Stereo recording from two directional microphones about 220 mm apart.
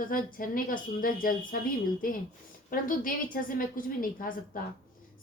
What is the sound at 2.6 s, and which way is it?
A woman's voice, 40° left (ahead or behind).